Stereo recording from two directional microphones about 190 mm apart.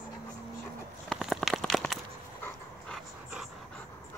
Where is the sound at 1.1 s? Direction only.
Centre (ahead or behind).